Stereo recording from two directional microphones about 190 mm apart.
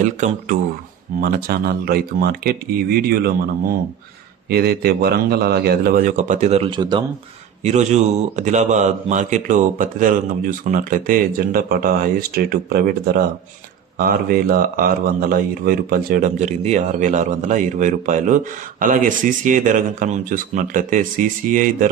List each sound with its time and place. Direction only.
0.0 s speech: 40° right (ahead or behind)
1.2 s speech: 50° right (ahead or behind); by 7.1 s 25° right (ahead or behind)
7.6 s speech: 35° right (ahead or behind)